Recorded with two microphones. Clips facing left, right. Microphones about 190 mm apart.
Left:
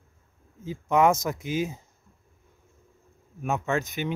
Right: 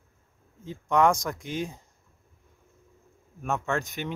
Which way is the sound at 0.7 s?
5° left (ahead or behind).